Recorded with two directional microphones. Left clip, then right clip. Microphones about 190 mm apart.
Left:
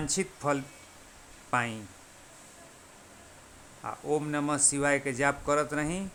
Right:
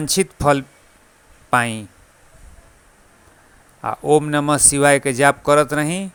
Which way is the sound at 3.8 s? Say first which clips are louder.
Right 15 dB; 45° right (ahead or behind).